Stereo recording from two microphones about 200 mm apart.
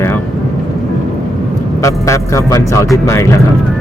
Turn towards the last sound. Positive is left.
turn(degrees=15)  # may be behind; listen again after turning